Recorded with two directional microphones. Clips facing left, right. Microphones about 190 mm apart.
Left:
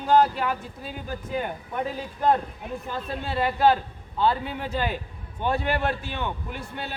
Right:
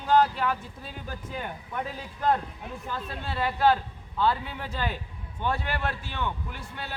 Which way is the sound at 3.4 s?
20° left (ahead or behind).